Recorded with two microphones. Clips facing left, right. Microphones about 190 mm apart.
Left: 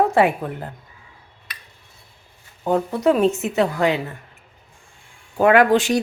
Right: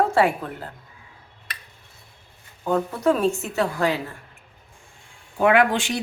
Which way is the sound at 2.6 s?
20° left (ahead or behind).